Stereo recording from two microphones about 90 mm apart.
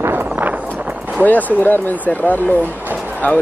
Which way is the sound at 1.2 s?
20° left (ahead or behind).